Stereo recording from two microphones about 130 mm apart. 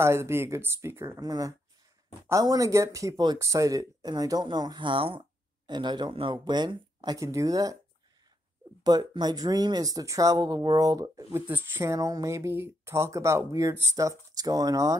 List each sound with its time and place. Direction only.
0.0 s speech: 20° right (ahead or behind)
8.8 s speech: 30° right (ahead or behind)
11.3 s speech: 15° right (ahead or behind)